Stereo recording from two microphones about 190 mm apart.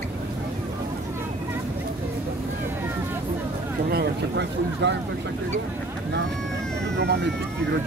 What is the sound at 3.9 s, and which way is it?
Speech, 65° right (ahead or behind).